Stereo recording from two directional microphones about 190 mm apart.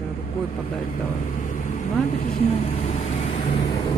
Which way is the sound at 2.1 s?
35° left (ahead or behind).